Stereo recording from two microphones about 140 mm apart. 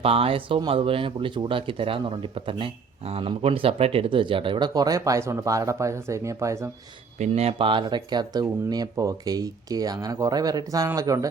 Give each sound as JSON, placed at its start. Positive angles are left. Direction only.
{"t": 0.0, "sound": "speech", "side_deg": -45}
{"t": 7.2, "sound": "speech", "side_deg": -50}